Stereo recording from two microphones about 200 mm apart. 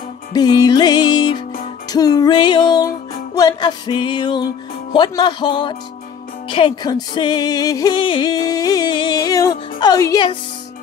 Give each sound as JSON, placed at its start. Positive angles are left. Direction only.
{"t": 0.3, "sound": "music", "side_deg": 20}